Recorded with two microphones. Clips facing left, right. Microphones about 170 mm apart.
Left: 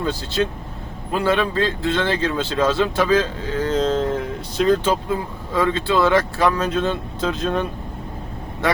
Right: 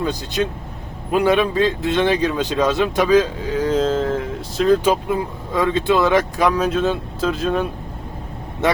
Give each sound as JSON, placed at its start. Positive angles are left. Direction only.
{"t": 0.0, "sound": "speech", "side_deg": -15}
{"t": 4.8, "sound": "speech", "side_deg": -15}
{"t": 8.6, "sound": "speech", "side_deg": -20}